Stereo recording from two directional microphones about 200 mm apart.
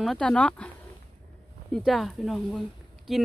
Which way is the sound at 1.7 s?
Centre (ahead or behind).